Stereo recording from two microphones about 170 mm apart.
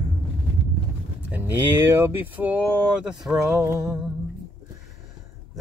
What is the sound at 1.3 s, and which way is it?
Mantra, 10° right (ahead or behind).